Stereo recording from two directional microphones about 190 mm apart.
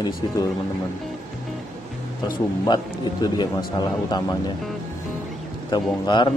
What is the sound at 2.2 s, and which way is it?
Speech, 20° left (ahead or behind).